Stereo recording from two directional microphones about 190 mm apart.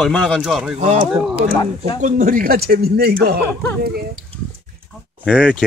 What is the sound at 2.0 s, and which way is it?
Speech, 45° right (ahead or behind).